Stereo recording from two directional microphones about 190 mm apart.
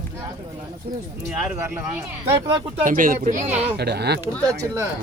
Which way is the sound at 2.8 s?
45° right (ahead or behind).